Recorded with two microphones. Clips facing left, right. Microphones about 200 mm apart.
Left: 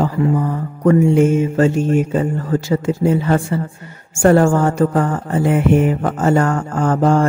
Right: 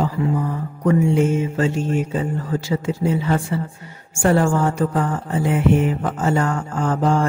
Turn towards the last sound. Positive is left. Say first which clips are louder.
# left 4 dB
turn(degrees=50)  # may be behind; listen again after turning